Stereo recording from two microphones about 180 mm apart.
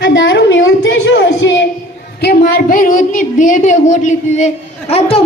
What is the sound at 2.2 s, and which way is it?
A woman's voice, 50° left (ahead or behind).